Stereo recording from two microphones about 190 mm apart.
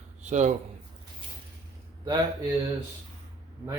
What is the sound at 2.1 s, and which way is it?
Speech, 20° right (ahead or behind).